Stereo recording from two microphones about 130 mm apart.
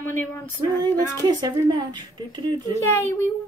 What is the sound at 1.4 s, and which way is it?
Speech, 35° right (ahead or behind).